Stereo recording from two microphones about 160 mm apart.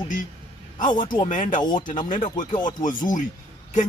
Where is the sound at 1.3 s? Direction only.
55° left (ahead or behind).